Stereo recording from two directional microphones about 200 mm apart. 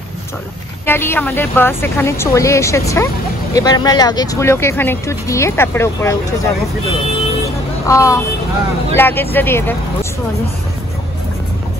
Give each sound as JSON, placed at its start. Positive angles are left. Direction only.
{"t": 0.8, "sound": "speech", "side_deg": 10}
{"t": 7.8, "sound": "speech", "side_deg": 15}